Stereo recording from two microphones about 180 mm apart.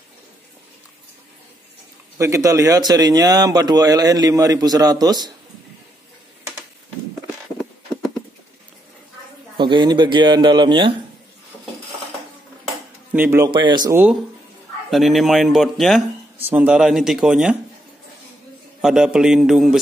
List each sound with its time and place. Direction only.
2.1 s speech: 15° right (ahead or behind)
9.6 s speech: 25° right (ahead or behind)
13.1 s speech: 10° right (ahead or behind)
13.5 s speech: 25° right (ahead or behind)
14.9 s speech: centre (ahead or behind)
18.8 s speech: 5° right (ahead or behind)